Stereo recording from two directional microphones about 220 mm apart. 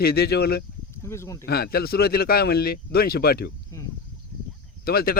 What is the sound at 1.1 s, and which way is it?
Speech, 10° left (ahead or behind).